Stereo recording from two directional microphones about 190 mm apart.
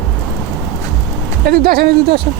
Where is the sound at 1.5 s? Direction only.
55° right (ahead or behind).